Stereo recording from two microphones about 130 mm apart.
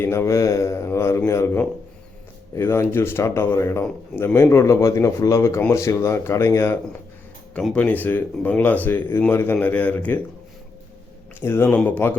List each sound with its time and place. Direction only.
0.0 s a man's voice: 20° left (ahead or behind)
7.5 s speech: 10° left (ahead or behind)
11.3 s speech: 15° left (ahead or behind)